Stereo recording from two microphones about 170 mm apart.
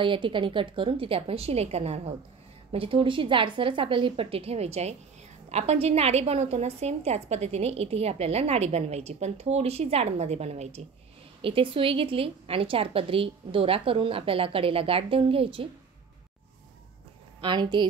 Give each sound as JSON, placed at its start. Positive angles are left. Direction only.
{"t": 0.0, "sound": "a woman's voice", "side_deg": -30}
{"t": 17.4, "sound": "a woman's voice", "side_deg": -25}